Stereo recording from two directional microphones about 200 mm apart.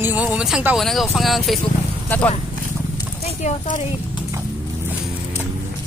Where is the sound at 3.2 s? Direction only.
35° left (ahead or behind).